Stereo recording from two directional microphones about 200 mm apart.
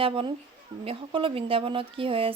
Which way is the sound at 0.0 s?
25° right (ahead or behind).